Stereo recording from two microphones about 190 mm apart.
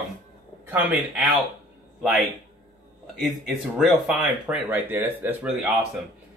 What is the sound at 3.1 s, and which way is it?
Speech, centre (ahead or behind).